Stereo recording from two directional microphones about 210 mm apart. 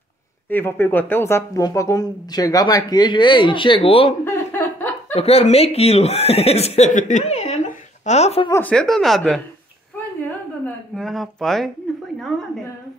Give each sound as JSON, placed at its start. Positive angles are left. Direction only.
{"t": 0.5, "sound": "speech", "side_deg": 10}
{"t": 4.2, "sound": "chuckle", "side_deg": 10}
{"t": 5.1, "sound": "speech", "side_deg": 30}
{"t": 8.5, "sound": "speech", "side_deg": 10}
{"t": 10.6, "sound": "a woman's voice", "side_deg": 0}
{"t": 12.2, "sound": "a sound", "side_deg": 0}